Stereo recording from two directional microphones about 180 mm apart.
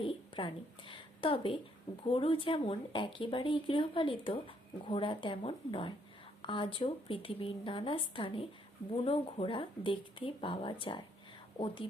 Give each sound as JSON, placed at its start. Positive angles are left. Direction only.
{"t": 0.0, "sound": "a woman's voice", "side_deg": 30}